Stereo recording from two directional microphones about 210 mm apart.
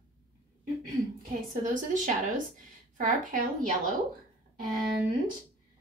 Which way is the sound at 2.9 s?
40° right (ahead or behind).